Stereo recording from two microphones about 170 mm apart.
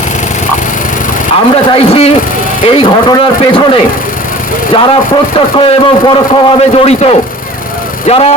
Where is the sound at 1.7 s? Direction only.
35° left (ahead or behind).